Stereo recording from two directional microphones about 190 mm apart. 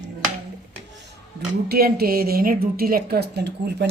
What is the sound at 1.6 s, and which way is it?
A woman's voice, 55° right (ahead or behind).